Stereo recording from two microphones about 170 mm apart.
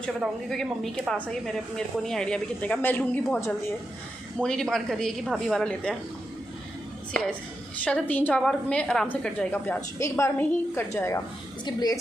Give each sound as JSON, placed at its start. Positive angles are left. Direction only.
{"t": 0.0, "sound": "a woman's voice", "side_deg": 5}
{"t": 4.4, "sound": "speech", "side_deg": 5}
{"t": 7.8, "sound": "a woman's voice", "side_deg": 10}